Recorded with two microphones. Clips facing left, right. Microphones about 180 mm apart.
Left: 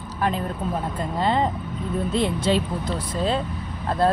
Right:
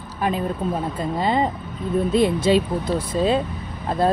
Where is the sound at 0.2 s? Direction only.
10° right (ahead or behind).